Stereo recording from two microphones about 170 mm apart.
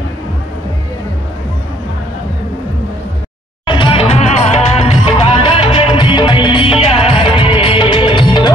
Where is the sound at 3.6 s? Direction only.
30° left (ahead or behind).